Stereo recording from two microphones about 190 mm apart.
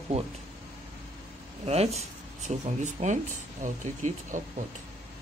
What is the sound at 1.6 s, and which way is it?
Speech, 35° right (ahead or behind).